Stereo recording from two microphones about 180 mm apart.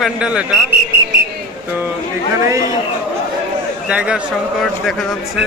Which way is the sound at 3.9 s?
5° right (ahead or behind).